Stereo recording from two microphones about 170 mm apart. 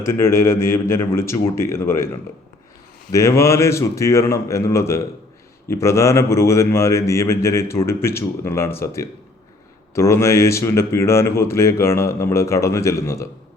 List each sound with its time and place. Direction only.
0.1 s speech: 15° left (ahead or behind)
3.1 s speech: 20° left (ahead or behind)